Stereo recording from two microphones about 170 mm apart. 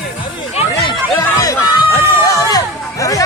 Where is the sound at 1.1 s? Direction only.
15° left (ahead or behind).